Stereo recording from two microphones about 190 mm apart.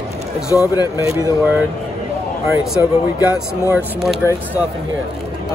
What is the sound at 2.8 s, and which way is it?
Speech, 10° right (ahead or behind).